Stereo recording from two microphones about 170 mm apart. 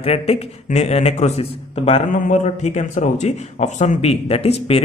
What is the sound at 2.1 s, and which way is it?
A man's voice, 45° left (ahead or behind).